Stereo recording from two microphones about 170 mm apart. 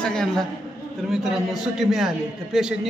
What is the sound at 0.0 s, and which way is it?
A man's voice, 5° left (ahead or behind).